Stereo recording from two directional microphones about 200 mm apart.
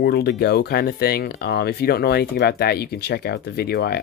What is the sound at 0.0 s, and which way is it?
Speech, 55° left (ahead or behind).